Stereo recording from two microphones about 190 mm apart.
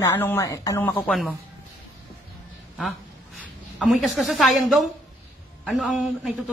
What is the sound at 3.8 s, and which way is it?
A man's voice, centre (ahead or behind).